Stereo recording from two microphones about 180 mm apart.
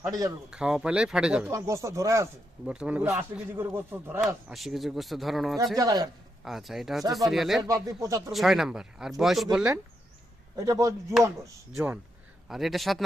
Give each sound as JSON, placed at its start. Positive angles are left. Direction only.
{"t": 0.0, "sound": "speech", "side_deg": -20}
{"t": 0.5, "sound": "speech", "side_deg": -5}
{"t": 1.5, "sound": "speech", "side_deg": -15}
{"t": 2.6, "sound": "speech", "side_deg": -5}
{"t": 4.5, "sound": "speech", "side_deg": 0}
{"t": 5.7, "sound": "speech", "side_deg": -20}
{"t": 6.4, "sound": "speech", "side_deg": 0}
{"t": 7.6, "sound": "speech", "side_deg": -20}
{"t": 8.3, "sound": "speech", "side_deg": 0}
{"t": 10.6, "sound": "speech", "side_deg": -15}
{"t": 12.5, "sound": "speech", "side_deg": 0}